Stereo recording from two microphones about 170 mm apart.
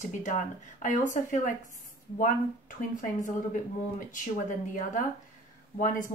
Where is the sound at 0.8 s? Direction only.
45° left (ahead or behind).